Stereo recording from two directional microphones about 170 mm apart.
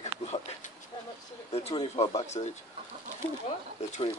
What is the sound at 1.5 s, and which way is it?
Speech, 35° left (ahead or behind).